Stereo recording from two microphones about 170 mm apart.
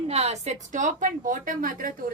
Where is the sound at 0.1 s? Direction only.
40° right (ahead or behind).